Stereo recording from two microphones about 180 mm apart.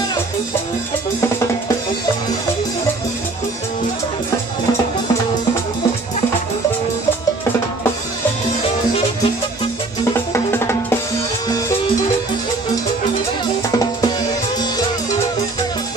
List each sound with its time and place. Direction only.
10.3 s music: 15° left (ahead or behind)
13.7 s drum: 20° left (ahead or behind)